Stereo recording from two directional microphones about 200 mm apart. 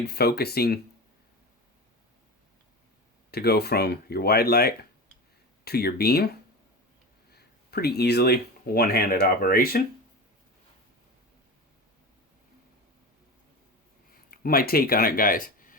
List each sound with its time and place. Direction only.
0.0 s speech: 50° left (ahead or behind)
3.3 s speech: 55° left (ahead or behind)
7.3 s speech: 50° left (ahead or behind)
14.3 s speech: 45° left (ahead or behind)